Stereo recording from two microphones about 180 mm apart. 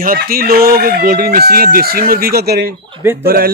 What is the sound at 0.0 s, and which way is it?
A man's voice, 55° right (ahead or behind).